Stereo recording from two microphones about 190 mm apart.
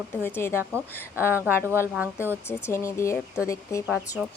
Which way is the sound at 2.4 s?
15° left (ahead or behind).